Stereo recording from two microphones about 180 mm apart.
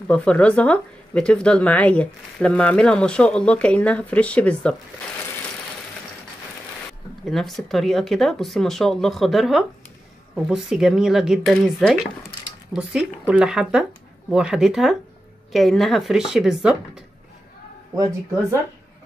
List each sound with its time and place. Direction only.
0.1 s speech: 5° left (ahead or behind)
7.2 s speech: centre (ahead or behind)
17.9 s speech: 20° right (ahead or behind)